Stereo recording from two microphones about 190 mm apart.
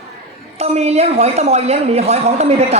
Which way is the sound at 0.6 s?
35° right (ahead or behind).